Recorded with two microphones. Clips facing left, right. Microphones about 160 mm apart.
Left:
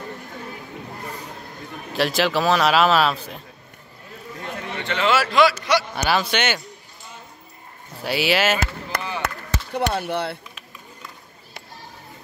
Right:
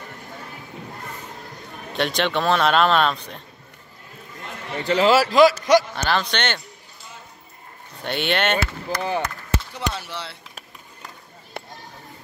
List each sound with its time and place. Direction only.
1.9 s a man's voice: centre (ahead or behind)
4.8 s a man's voice: 35° right (ahead or behind)
5.9 s speech: 10° left (ahead or behind)
8.0 s a man's voice: 5° left (ahead or behind)
8.9 s speech: 60° left (ahead or behind)
11.6 s a sound: 55° right (ahead or behind)